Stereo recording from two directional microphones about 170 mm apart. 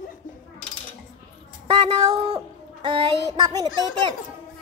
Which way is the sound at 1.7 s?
30° right (ahead or behind).